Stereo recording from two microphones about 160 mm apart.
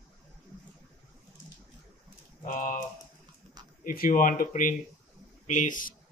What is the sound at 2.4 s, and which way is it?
Typewriter, 55° left (ahead or behind).